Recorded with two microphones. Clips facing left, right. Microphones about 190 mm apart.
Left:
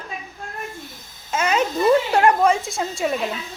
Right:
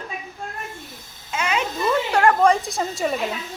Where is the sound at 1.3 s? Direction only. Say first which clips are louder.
Left 4 dB; 40° left (ahead or behind).